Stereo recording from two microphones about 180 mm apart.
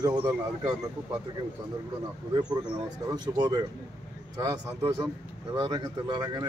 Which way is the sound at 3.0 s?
20° right (ahead or behind).